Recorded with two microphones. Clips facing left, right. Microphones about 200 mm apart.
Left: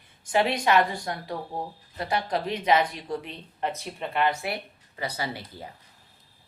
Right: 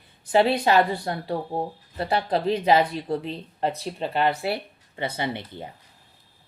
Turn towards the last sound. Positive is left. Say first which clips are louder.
# right 4 dB
turn(degrees=-25)  # may be behind; listen again after turning